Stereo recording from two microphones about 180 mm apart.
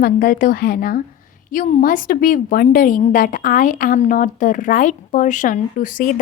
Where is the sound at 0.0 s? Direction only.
55° left (ahead or behind).